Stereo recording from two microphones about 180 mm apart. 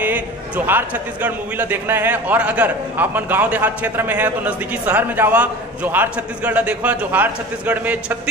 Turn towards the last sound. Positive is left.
turn(degrees=-10)  # may be behind; listen again after turning